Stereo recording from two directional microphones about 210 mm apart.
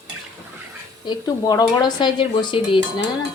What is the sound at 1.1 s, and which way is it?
Speech, 20° left (ahead or behind).